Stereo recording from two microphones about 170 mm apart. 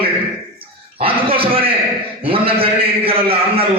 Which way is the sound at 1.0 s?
30° right (ahead or behind).